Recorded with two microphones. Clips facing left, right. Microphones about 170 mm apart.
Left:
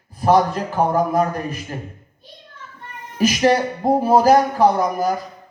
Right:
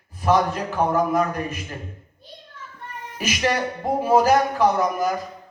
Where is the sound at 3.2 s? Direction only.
35° left (ahead or behind).